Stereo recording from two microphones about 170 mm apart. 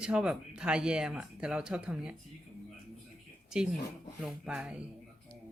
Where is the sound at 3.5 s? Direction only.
5° right (ahead or behind).